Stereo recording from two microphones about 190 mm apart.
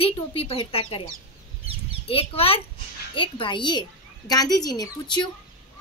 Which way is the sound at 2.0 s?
30° left (ahead or behind).